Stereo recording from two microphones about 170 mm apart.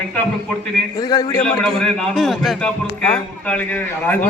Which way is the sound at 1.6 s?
Centre (ahead or behind).